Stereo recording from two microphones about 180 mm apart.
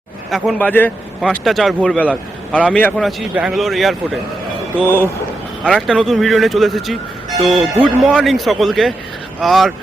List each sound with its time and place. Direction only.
0.3 s a man's voice: centre (ahead or behind)
0.7 s speech: 10° left (ahead or behind)
1.3 s a man's voice: centre (ahead or behind)
4.8 s speech: 10° left (ahead or behind)
5.9 s a man's voice: 5° right (ahead or behind)